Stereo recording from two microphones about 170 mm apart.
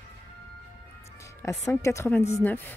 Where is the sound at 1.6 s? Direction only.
15° left (ahead or behind).